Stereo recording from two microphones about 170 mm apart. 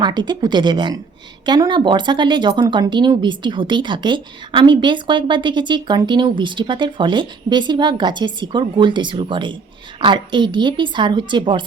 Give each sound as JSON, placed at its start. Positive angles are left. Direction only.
{"t": 0.0, "sound": "speech", "side_deg": -25}